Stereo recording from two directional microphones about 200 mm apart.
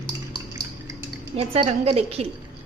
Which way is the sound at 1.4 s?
35° right (ahead or behind).